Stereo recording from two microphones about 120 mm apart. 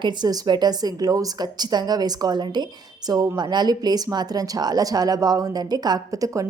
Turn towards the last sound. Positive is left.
turn(degrees=-30)  # may be behind; listen again after turning